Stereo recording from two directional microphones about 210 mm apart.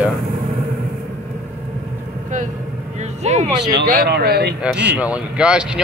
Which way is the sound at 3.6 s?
50° right (ahead or behind).